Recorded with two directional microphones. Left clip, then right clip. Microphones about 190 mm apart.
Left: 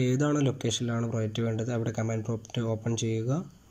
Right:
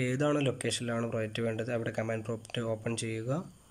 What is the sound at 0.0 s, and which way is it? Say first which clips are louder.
Speech: left 2 dB; 5° right (ahead or behind).